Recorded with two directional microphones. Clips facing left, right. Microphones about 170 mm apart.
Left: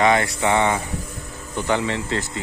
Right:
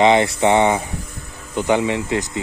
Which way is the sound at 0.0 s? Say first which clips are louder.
Right 4 dB; 20° right (ahead or behind).